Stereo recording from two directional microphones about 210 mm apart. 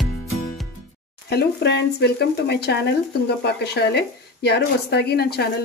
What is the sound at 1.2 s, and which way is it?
Speech, 50° left (ahead or behind).